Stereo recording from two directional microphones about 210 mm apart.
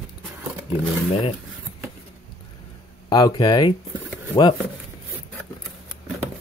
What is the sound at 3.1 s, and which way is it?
Speech, 20° left (ahead or behind).